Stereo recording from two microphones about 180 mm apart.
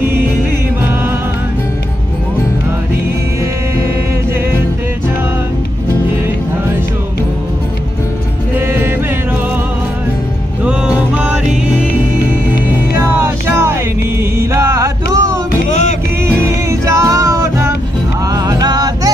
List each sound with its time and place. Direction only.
8.5 s music: 10° right (ahead or behind)
10.6 s music: 5° right (ahead or behind)
12.9 s music: 15° right (ahead or behind)
14.4 s mantra: 15° right (ahead or behind)
15.1 s music: 20° right (ahead or behind)
15.7 s music: 40° left (ahead or behind)
16.4 s music: 15° right (ahead or behind)